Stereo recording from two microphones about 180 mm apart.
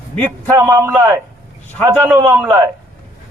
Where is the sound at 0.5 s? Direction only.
15° right (ahead or behind).